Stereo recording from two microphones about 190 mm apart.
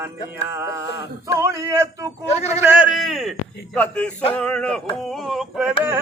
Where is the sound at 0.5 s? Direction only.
15° right (ahead or behind).